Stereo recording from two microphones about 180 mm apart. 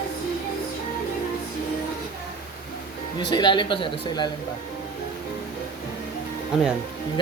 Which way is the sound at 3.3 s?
25° left (ahead or behind).